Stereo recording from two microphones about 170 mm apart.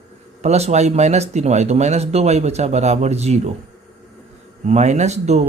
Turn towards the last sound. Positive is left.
turn(degrees=-40)  # may be behind; listen again after turning